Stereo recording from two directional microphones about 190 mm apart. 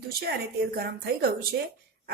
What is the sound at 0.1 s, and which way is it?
A woman's voice, 55° right (ahead or behind).